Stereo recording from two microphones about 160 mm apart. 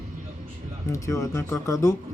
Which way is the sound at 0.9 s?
20° left (ahead or behind).